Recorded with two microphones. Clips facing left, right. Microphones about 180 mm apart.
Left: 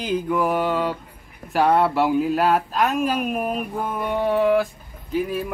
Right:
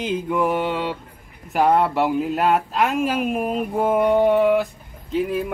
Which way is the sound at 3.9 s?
20° right (ahead or behind).